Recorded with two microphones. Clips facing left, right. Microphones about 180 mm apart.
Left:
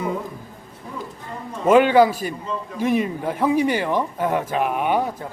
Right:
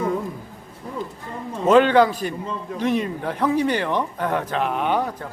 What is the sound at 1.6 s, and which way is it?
A man's voice, 10° left (ahead or behind).